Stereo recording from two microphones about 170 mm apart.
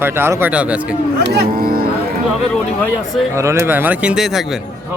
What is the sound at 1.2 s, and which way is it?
Speech, 65° right (ahead or behind).